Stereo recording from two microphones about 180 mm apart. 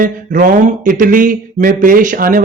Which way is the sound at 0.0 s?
50° right (ahead or behind).